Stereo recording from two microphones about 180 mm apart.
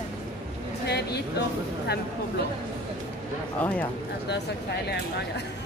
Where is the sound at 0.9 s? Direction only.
65° left (ahead or behind).